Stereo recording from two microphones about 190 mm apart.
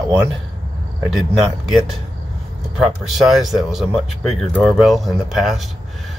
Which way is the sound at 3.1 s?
Centre (ahead or behind).